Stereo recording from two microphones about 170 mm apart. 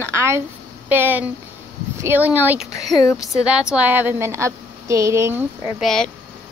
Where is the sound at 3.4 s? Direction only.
5° right (ahead or behind).